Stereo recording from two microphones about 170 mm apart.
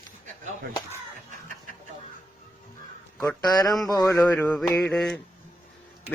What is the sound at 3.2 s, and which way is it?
Speech, 20° left (ahead or behind).